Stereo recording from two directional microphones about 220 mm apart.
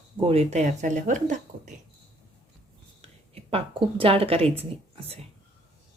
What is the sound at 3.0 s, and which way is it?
A woman's voice, 25° right (ahead or behind).